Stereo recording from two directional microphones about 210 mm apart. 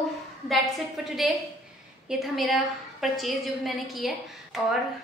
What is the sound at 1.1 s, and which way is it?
A woman's voice, centre (ahead or behind).